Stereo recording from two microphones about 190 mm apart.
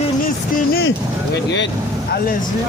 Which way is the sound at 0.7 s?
55° left (ahead or behind).